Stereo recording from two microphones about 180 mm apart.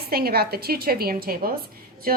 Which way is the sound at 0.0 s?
60° right (ahead or behind).